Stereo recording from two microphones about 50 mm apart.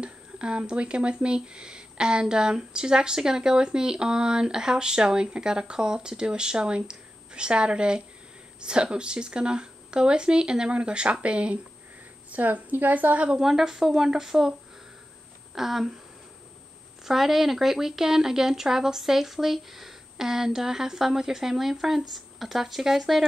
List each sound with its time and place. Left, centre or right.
0.0 s speech: centre
12.3 s a woman's voice: right
13.3 s speech: centre
15.5 s speech: centre
17.0 s speech: centre